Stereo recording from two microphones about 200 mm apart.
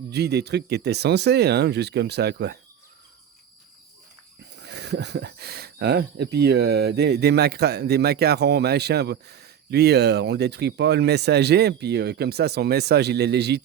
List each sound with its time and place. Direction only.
0.1 s speech: 55° right (ahead or behind)
4.6 s speech: 60° right (ahead or behind)